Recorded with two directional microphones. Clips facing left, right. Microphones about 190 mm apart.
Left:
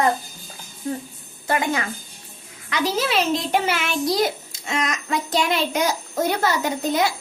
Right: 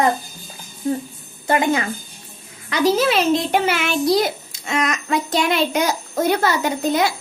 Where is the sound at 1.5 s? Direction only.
20° right (ahead or behind).